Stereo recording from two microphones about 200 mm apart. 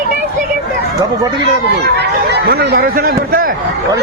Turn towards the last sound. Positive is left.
turn(degrees=-45)  # may be behind; listen again after turning